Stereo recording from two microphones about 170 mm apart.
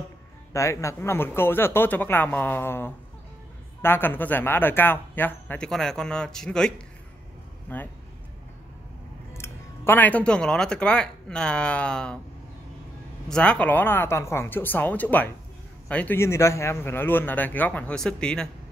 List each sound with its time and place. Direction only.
0.5 s speech: 15° left (ahead or behind)
9.3 s speech: 15° left (ahead or behind)
13.3 s speech: 5° left (ahead or behind)